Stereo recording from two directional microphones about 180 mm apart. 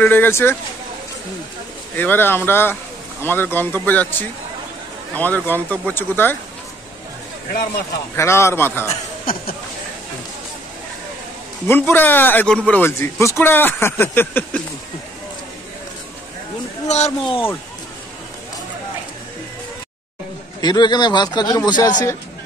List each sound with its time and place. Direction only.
0.0 s speech: 10° left (ahead or behind)
2.0 s speech: 10° left (ahead or behind)
8.2 s speech: 15° left (ahead or behind)
9.2 s speech: 50° left (ahead or behind)
11.6 s speech: 10° left (ahead or behind)
16.8 s speech: 40° left (ahead or behind)
20.6 s a man's voice: 25° left (ahead or behind)